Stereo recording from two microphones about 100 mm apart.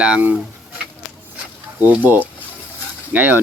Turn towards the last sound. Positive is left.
turn(degrees=-20)  # may be behind; listen again after turning